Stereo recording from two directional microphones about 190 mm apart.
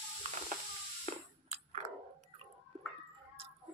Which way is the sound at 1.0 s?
40° right (ahead or behind).